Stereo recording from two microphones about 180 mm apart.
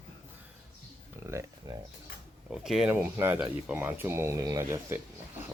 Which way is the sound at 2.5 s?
5° right (ahead or behind).